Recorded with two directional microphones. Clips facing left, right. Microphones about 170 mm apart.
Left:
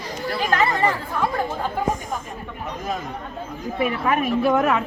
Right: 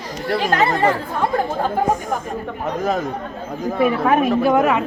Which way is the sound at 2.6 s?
85° right.